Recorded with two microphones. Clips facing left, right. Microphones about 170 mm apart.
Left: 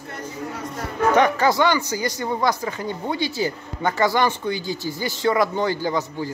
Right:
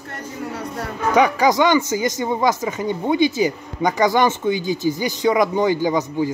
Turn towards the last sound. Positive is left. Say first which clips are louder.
# right 5 dB
turn(degrees=-15)  # may be behind; listen again after turning